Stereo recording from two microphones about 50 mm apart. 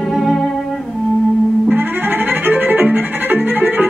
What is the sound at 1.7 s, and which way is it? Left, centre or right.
Music, right.